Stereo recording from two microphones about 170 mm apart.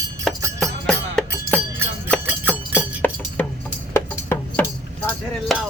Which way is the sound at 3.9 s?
15° left (ahead or behind).